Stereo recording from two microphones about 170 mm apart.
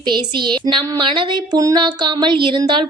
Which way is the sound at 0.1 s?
25° right (ahead or behind).